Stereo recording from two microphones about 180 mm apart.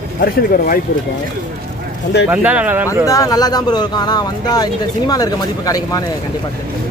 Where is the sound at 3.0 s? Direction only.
20° left (ahead or behind).